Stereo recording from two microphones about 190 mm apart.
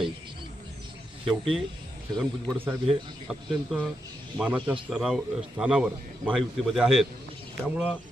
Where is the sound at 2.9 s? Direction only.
25° right (ahead or behind).